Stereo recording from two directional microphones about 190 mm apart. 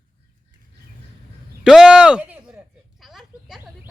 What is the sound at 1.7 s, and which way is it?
Speech, 5° right (ahead or behind).